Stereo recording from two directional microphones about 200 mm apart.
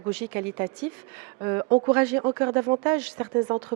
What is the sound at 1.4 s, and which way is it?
A woman's voice, 20° right (ahead or behind).